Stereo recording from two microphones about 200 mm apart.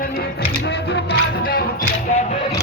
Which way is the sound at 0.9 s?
55° left (ahead or behind).